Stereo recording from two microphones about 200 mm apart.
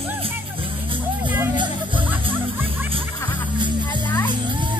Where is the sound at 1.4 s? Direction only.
20° right (ahead or behind).